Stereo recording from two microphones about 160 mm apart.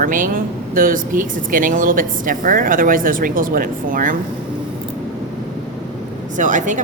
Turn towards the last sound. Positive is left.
turn(degrees=-50)  # may be behind; listen again after turning